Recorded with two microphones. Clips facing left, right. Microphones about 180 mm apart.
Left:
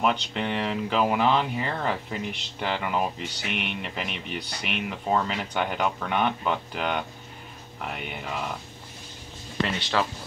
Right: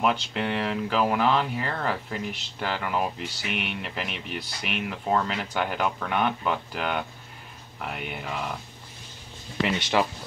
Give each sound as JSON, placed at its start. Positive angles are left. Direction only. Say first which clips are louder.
{"t": 0.0, "sound": "speech", "louder": "even", "side_deg": -5}
{"t": 9.7, "sound": "speech", "louder": "right 4 dB", "side_deg": -15}